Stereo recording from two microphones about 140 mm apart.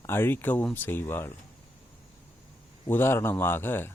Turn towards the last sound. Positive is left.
turn(degrees=15)  # may be behind; listen again after turning